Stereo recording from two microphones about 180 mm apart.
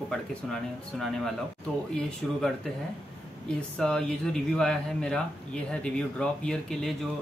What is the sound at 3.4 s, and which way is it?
A man's voice, 5° left (ahead or behind).